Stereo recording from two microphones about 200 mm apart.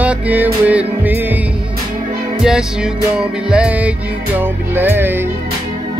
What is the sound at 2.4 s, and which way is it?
Music, 5° right (ahead or behind).